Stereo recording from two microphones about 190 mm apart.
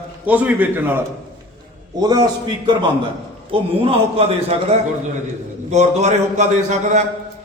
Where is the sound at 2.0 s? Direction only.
20° right (ahead or behind).